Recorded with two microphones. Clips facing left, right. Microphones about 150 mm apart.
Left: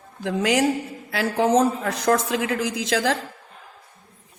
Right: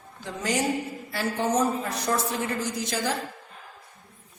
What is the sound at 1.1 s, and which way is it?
A woman's voice, 90° left.